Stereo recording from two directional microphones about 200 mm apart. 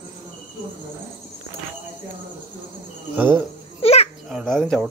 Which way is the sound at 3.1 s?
10° right (ahead or behind).